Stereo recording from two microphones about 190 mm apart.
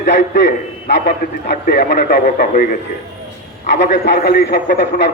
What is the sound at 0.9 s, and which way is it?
A man's voice, 60° left (ahead or behind).